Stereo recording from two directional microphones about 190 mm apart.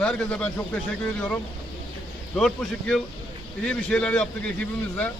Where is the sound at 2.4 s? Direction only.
5° left (ahead or behind).